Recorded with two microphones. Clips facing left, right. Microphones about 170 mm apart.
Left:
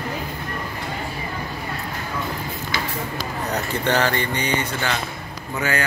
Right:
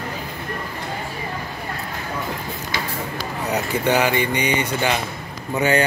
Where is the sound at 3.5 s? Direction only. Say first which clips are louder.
Right 3 dB; 10° right (ahead or behind).